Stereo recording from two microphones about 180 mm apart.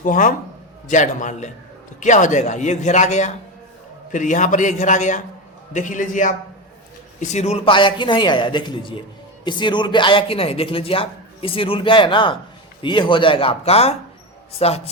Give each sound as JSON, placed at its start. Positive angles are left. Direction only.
{"t": 0.0, "sound": "a man's voice", "side_deg": 45}